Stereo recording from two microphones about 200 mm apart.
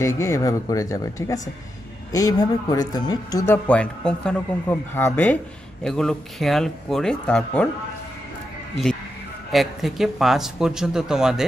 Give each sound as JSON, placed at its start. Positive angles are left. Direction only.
{"t": 0.0, "sound": "speech", "side_deg": 15}
{"t": 9.5, "sound": "speech", "side_deg": 0}